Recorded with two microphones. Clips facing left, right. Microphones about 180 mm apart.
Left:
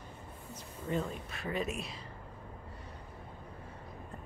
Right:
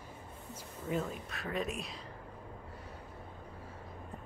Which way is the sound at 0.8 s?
5° right (ahead or behind).